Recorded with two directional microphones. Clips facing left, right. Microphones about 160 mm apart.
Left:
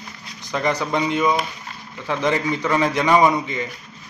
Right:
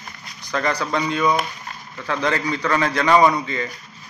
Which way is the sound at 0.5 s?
20° left (ahead or behind).